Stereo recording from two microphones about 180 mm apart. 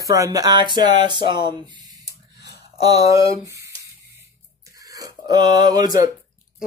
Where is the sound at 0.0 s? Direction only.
20° right (ahead or behind).